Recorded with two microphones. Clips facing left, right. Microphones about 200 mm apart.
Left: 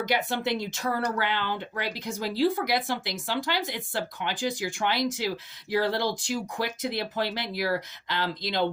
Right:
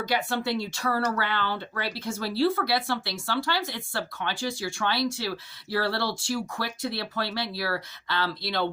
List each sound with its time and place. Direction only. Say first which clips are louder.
0.0 s speech: even; 20° left (ahead or behind)